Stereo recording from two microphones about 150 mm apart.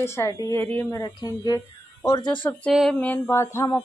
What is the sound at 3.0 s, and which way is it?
Speech, 15° left (ahead or behind).